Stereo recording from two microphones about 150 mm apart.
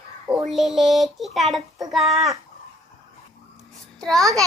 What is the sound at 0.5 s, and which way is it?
A child's voice, centre (ahead or behind).